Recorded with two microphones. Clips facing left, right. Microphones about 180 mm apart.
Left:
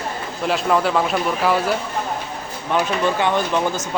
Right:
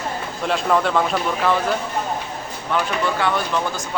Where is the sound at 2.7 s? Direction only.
20° left (ahead or behind).